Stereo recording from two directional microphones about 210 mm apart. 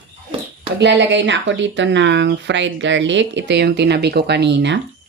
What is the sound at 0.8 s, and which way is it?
Speech, 55° right (ahead or behind).